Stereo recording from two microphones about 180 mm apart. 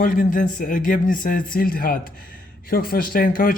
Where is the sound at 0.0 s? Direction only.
50° left (ahead or behind).